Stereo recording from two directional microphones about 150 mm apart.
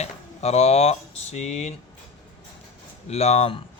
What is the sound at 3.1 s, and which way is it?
Speech, 45° left (ahead or behind).